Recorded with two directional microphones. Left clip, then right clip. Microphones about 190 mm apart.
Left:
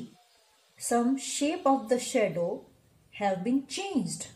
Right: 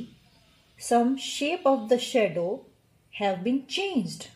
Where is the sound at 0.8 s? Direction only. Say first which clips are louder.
Right 4 dB; 40° right (ahead or behind).